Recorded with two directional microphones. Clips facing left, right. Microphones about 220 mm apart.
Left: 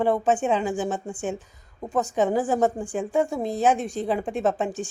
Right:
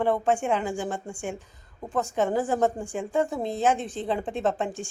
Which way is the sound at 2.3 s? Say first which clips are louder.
Left 2 dB; 15° left (ahead or behind).